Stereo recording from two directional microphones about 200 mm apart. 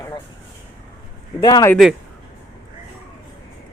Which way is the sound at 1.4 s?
20° left (ahead or behind).